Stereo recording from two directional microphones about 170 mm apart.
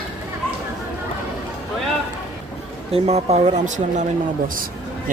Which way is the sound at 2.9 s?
40° right (ahead or behind).